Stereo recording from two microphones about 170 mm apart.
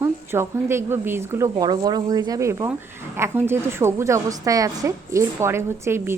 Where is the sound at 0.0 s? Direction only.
15° right (ahead or behind).